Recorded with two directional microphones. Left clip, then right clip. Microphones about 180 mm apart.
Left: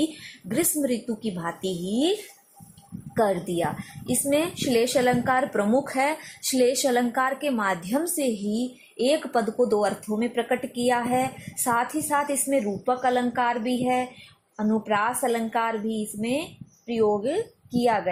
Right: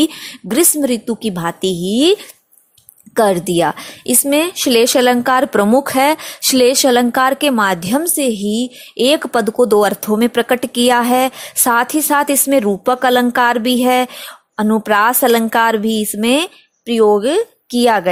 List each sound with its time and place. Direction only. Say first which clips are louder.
0.4 s a woman's voice: right 11 dB; 50° right (ahead or behind)
3.2 s a woman's voice: right 11 dB; 50° right (ahead or behind)